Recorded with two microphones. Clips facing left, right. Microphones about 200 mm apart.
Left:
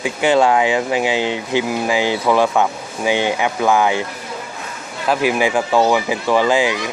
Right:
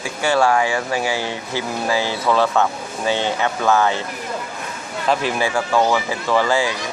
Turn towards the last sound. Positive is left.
turn(degrees=15)  # may be behind; listen again after turning